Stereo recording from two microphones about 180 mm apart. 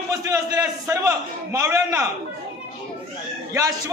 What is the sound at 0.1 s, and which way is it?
A man's voice, 20° right (ahead or behind).